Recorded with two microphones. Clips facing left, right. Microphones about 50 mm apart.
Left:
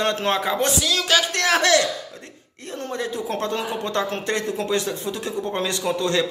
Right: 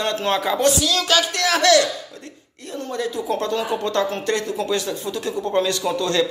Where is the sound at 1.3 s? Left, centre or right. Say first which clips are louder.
Even; left.